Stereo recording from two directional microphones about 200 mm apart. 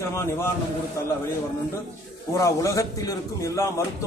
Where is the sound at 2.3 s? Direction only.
15° left (ahead or behind).